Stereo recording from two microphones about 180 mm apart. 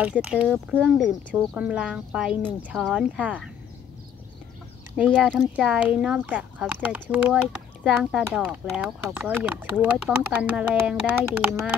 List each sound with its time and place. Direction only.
0.2 s speech: 5° right (ahead or behind)
5.2 s speech: centre (ahead or behind)